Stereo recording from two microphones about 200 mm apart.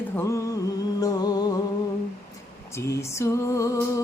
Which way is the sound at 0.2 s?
15° left (ahead or behind).